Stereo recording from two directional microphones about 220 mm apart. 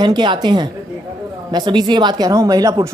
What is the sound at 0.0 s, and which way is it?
A woman's voice, 20° right (ahead or behind).